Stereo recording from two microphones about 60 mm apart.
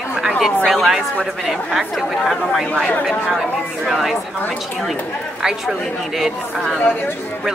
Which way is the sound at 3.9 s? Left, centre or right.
Centre.